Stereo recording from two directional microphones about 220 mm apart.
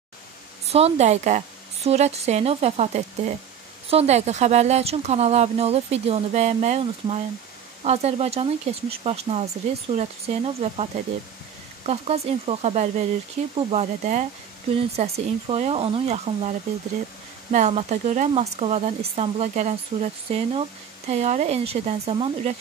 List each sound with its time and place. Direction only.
0.7 s speech: 30° right (ahead or behind)